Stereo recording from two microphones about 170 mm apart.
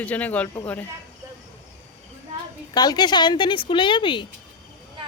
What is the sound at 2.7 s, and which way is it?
Speech, 25° left (ahead or behind).